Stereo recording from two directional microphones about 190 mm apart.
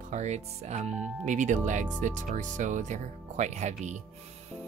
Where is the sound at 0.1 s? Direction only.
35° right (ahead or behind).